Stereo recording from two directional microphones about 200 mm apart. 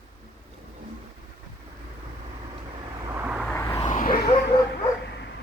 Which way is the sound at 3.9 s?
40° left (ahead or behind).